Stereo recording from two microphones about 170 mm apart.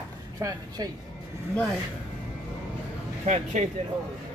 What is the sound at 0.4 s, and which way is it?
Speech, 20° right (ahead or behind).